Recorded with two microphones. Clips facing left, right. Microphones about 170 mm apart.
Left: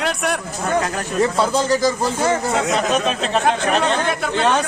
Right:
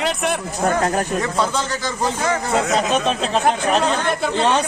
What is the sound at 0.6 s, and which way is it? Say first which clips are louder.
Speech: right 3 dB; 40° right (ahead or behind).